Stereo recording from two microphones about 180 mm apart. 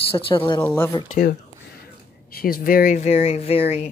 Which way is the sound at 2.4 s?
55° left (ahead or behind).